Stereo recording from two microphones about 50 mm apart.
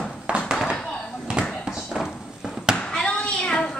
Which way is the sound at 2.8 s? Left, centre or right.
Centre.